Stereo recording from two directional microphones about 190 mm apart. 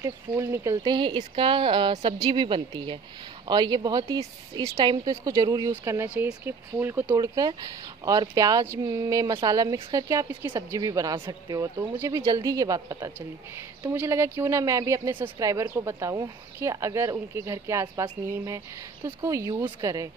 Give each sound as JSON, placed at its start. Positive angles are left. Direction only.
{"t": 0.0, "sound": "speech", "side_deg": -15}